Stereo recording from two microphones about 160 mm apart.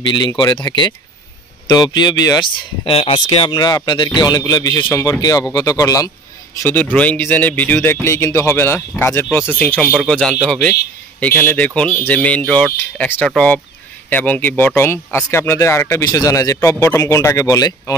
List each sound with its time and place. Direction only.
0.1 s speech: 25° left (ahead or behind)
2.9 s speech: 35° left (ahead or behind)
6.6 s speech: 10° left (ahead or behind)